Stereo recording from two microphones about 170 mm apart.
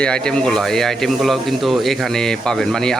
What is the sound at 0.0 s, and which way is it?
Speech, 5° left (ahead or behind).